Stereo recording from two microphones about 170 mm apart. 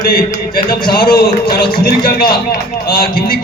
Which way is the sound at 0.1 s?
60° left (ahead or behind).